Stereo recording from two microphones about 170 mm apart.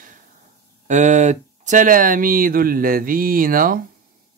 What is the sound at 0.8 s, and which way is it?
Speech, 45° right (ahead or behind).